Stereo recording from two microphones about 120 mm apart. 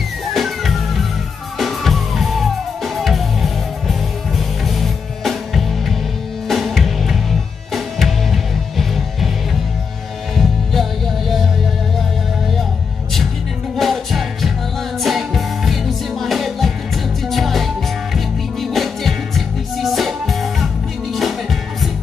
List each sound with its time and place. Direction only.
0.3 s music: centre (ahead or behind)
13.7 s music: centre (ahead or behind)